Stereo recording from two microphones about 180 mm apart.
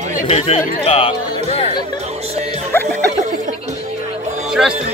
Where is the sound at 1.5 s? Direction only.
35° left (ahead or behind).